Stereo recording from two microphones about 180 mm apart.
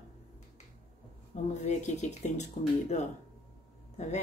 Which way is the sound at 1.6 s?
40° left (ahead or behind).